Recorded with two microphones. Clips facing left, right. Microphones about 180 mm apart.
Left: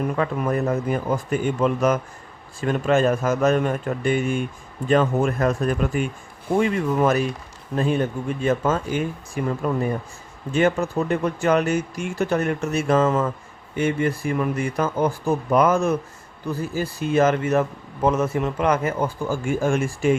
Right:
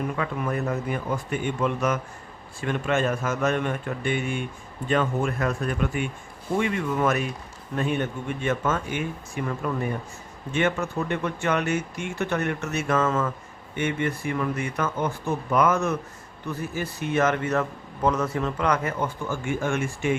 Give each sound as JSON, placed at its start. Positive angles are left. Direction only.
{"t": 0.2, "sound": "speech", "side_deg": 40}